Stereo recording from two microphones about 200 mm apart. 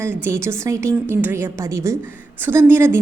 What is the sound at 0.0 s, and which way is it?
A woman's voice, 10° right (ahead or behind).